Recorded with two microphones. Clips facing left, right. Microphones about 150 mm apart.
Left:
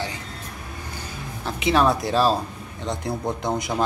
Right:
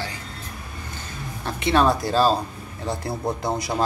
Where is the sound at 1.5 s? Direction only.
Centre (ahead or behind).